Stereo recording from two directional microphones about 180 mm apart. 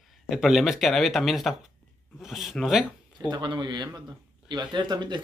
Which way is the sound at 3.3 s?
25° right (ahead or behind).